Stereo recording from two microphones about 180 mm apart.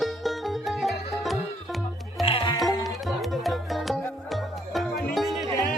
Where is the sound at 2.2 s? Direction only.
30° left (ahead or behind).